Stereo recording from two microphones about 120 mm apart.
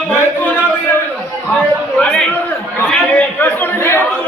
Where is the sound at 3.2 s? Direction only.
15° left (ahead or behind).